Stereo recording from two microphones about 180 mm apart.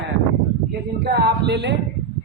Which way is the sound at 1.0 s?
65° right (ahead or behind).